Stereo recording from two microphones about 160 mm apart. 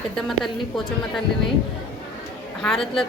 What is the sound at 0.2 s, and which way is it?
Speech, centre (ahead or behind).